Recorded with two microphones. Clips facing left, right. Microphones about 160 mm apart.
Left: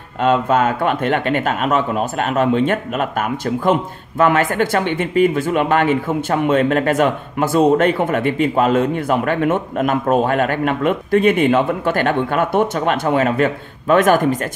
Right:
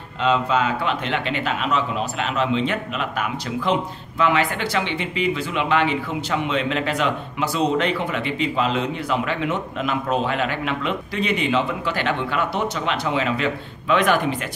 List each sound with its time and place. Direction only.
0.2 s speech: 50° left (ahead or behind)